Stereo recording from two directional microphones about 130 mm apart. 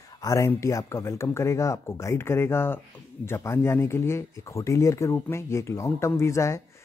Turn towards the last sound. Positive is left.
turn(degrees=20)  # may be behind; listen again after turning